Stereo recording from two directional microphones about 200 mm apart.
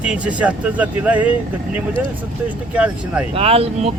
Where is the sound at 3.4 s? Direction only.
30° right (ahead or behind).